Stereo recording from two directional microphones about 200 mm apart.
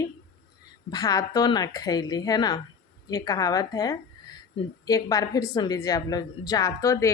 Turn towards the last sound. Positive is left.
turn(degrees=15)  # may be behind; listen again after turning